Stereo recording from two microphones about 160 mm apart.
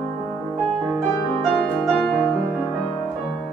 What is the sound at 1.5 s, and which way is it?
Music, centre (ahead or behind).